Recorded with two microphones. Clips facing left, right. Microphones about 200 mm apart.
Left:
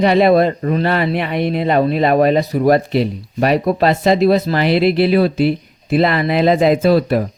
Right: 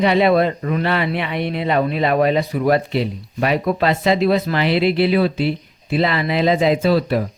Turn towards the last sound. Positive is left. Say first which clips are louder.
# left 3 dB
turn(degrees=50)  # may be behind; listen again after turning